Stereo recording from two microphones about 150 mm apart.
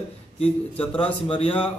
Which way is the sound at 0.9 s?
40° left (ahead or behind).